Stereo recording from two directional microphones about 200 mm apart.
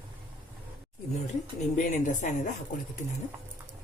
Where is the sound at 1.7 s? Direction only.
40° left (ahead or behind).